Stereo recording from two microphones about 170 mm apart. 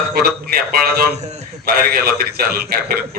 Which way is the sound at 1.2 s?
40° right (ahead or behind).